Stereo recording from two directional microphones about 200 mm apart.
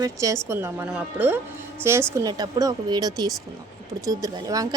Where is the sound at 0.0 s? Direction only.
15° right (ahead or behind).